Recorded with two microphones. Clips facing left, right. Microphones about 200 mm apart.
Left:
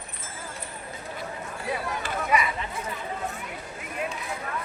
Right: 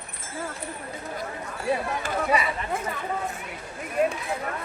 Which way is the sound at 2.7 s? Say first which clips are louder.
Right 5 dB; 50° right (ahead or behind).